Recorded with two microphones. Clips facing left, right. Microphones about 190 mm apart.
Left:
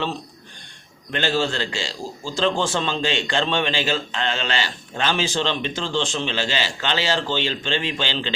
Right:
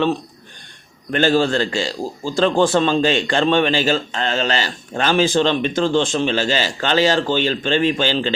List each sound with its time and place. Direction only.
1.1 s a man's voice: 45° right (ahead or behind)